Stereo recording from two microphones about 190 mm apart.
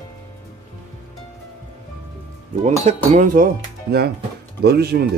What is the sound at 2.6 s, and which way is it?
Speech, 40° right (ahead or behind).